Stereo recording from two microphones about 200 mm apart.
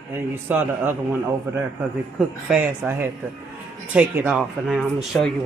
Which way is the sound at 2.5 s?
10° right (ahead or behind).